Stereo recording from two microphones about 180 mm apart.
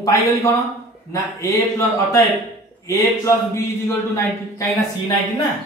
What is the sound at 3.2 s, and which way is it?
Speech, 15° left (ahead or behind).